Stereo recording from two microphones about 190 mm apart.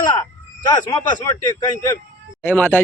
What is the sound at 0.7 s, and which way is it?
A man's voice, 20° left (ahead or behind).